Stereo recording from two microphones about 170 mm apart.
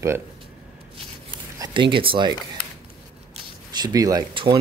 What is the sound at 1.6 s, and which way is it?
Speech, 30° right (ahead or behind).